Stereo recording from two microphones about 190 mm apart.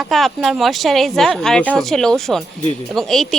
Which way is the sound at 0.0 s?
Centre (ahead or behind).